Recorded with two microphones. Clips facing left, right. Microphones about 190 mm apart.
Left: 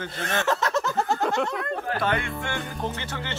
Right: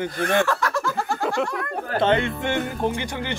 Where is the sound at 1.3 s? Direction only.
20° left (ahead or behind).